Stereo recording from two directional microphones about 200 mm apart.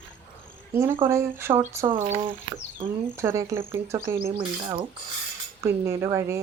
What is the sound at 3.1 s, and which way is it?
A woman's voice, 15° right (ahead or behind).